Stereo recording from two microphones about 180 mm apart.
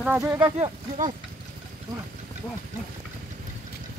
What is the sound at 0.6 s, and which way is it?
Speech, 45° right (ahead or behind).